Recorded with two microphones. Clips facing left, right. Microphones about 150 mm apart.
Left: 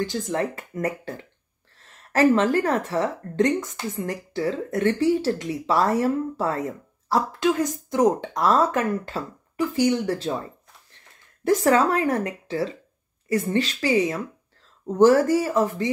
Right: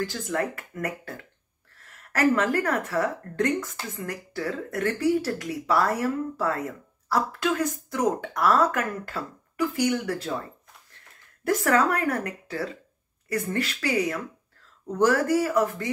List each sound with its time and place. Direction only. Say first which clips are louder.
0.0 s a woman's voice: left 3 dB; 20° left (ahead or behind)
11.4 s speech: left 3 dB; 25° left (ahead or behind)